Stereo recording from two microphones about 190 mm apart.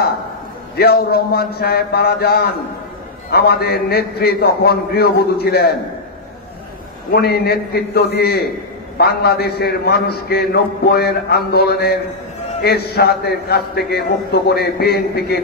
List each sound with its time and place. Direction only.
0.7 s a man's voice: 55° left (ahead or behind)
7.1 s a man's voice: 55° left (ahead or behind)